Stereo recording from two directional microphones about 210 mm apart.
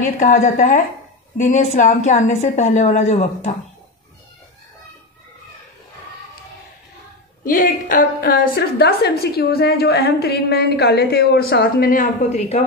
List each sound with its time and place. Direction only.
0.2 s a woman's voice: 35° left (ahead or behind)
7.4 s a woman's voice: 40° left (ahead or behind)